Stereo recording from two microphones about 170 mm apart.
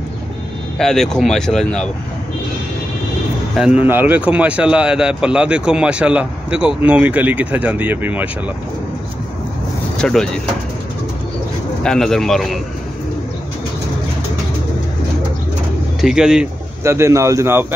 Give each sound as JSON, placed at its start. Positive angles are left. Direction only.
{"t": 0.7, "sound": "speech", "side_deg": 5}
{"t": 3.5, "sound": "a man's voice", "side_deg": -5}
{"t": 9.9, "sound": "speech", "side_deg": 5}
{"t": 11.8, "sound": "speech", "side_deg": 5}
{"t": 16.0, "sound": "speech", "side_deg": -5}
{"t": 16.8, "sound": "a man's voice", "side_deg": -15}